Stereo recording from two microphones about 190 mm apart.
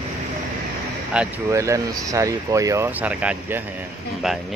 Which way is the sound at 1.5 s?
15° right (ahead or behind).